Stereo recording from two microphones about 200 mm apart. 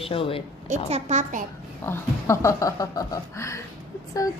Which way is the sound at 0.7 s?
35° right (ahead or behind).